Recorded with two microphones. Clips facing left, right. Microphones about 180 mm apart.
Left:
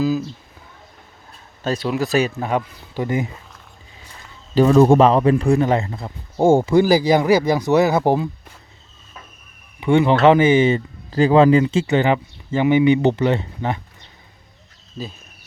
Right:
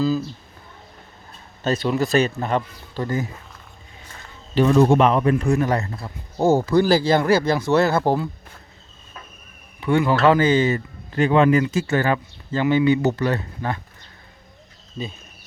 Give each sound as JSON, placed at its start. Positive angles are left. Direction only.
{"t": 0.0, "sound": "speech", "side_deg": 10}
{"t": 1.6, "sound": "speech", "side_deg": 0}
{"t": 4.5, "sound": "speech", "side_deg": 40}
{"t": 9.8, "sound": "speech", "side_deg": 20}
{"t": 11.1, "sound": "speech", "side_deg": 35}